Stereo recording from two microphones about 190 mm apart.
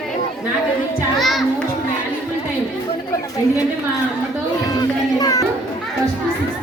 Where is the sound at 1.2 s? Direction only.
Centre (ahead or behind).